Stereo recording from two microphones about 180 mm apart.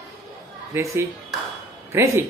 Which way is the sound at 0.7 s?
15° right (ahead or behind).